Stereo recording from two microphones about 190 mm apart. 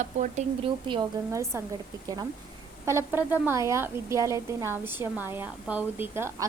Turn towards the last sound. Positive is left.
turn(degrees=-15)  # may be behind; listen again after turning